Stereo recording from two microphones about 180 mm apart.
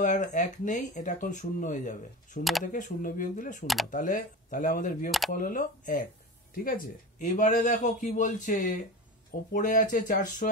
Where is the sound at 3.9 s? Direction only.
45° left (ahead or behind).